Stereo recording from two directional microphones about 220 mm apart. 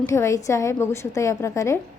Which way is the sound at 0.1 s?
15° left (ahead or behind).